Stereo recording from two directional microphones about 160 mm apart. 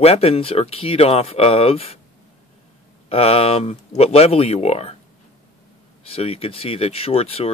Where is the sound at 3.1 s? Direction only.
35° left (ahead or behind).